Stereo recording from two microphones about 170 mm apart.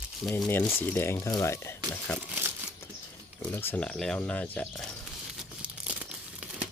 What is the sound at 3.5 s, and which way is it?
Speech, 10° left (ahead or behind).